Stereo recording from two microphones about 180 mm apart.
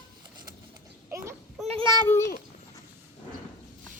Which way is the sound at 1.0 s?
15° right (ahead or behind).